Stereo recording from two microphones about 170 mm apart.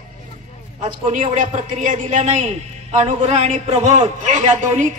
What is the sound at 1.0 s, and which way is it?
A man's voice, 45° right (ahead or behind).